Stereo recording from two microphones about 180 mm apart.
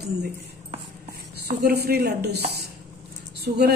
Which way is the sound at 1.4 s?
60° right (ahead or behind).